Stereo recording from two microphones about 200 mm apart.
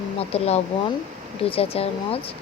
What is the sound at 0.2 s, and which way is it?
Speech, 30° left (ahead or behind).